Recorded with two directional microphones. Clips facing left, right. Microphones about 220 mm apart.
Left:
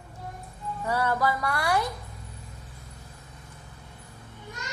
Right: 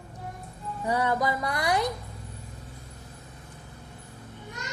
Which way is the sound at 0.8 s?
15° right (ahead or behind).